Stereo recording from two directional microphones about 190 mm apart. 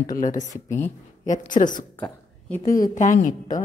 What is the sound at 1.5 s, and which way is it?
Speech, 45° left (ahead or behind).